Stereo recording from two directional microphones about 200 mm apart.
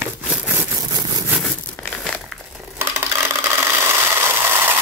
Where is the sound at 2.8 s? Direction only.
15° right (ahead or behind).